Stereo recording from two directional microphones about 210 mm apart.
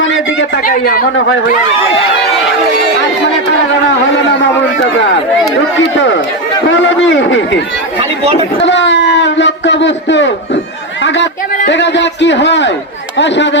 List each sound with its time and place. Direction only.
0.0 s a sound: 65° left (ahead or behind)
0.6 s speech: 45° left (ahead or behind)
5.9 s a man's voice: 60° left (ahead or behind)
8.6 s a man's voice: 55° left (ahead or behind)